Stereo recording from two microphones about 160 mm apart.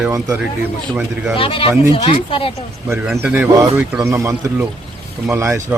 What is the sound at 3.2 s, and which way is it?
Speech, 10° right (ahead or behind).